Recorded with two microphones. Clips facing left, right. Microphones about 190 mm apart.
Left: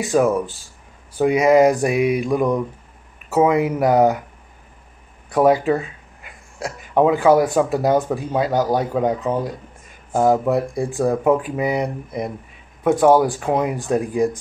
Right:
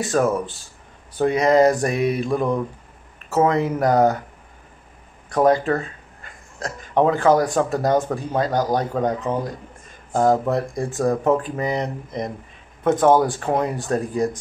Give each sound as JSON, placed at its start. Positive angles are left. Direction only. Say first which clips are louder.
{"t": 0.0, "sound": "speech", "louder": "left 3 dB", "side_deg": 15}
{"t": 5.3, "sound": "speech", "louder": "left 2 dB", "side_deg": 10}